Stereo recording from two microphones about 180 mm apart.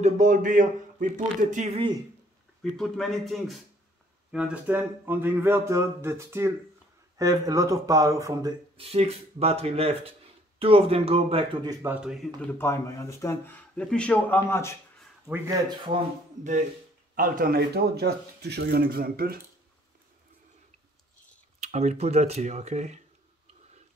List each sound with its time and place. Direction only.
0.0 s a man's voice: 45° right (ahead or behind)
2.8 s a man's voice: centre (ahead or behind); by 8.5 s 20° right (ahead or behind)
8.7 s speech: 35° right (ahead or behind)
11.6 s speech: 20° right (ahead or behind)
11.9 s a man's voice: 5° right (ahead or behind)
12.4 s speech: 15° left (ahead or behind)
15.2 s speech: 15° right (ahead or behind)
15.7 s speech: 25° right (ahead or behind)
17.1 s speech: 50° right (ahead or behind)
21.5 s speech: 40° right (ahead or behind)